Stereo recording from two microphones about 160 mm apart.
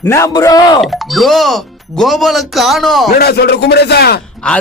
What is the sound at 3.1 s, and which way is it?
Speech, 80° left.